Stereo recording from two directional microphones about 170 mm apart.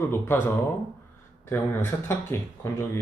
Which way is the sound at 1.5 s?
15° left (ahead or behind).